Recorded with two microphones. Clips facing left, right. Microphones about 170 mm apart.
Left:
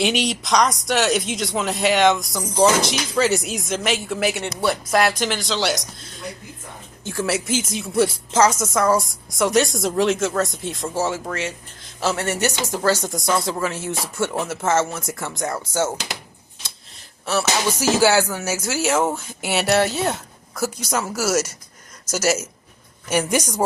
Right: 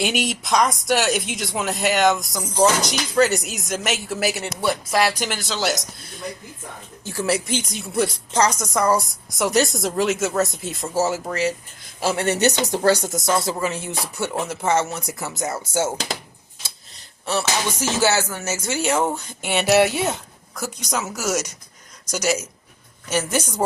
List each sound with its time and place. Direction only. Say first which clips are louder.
0.0 s a woman's voice: left 2 dB; 5° right (ahead or behind)
7.0 s a woman's voice: even; centre (ahead or behind)
11.9 s speech: right 2 dB; 15° right (ahead or behind)
13.1 s a woman's voice: even; centre (ahead or behind)
17.2 s a woman's voice: left 2 dB; 5° left (ahead or behind); by 20.1 s 10° right (ahead or behind)
20.1 s a woman's voice: left 5 dB; centre (ahead or behind)